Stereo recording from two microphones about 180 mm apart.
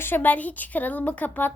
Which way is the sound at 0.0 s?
10° left (ahead or behind).